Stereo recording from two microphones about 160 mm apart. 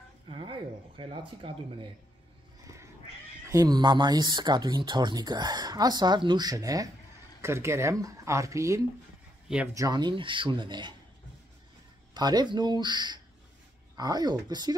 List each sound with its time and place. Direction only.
0.3 s speech: 35° right (ahead or behind)
2.6 s cat: 20° right (ahead or behind)
3.4 s speech: 25° right (ahead or behind)
12.1 s speech: 25° right (ahead or behind)